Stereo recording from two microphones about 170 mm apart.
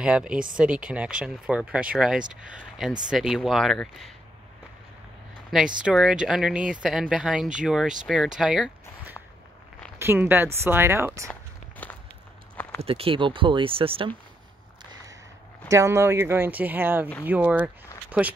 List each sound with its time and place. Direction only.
0.0 s speech: 5° right (ahead or behind)
5.8 s speech: 5° right (ahead or behind)
11.2 s walk: 10° left (ahead or behind)
12.8 s speech: 35° right (ahead or behind)
15.7 s speech: 15° right (ahead or behind)